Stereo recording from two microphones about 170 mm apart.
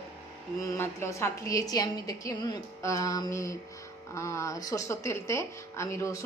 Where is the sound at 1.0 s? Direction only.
20° left (ahead or behind).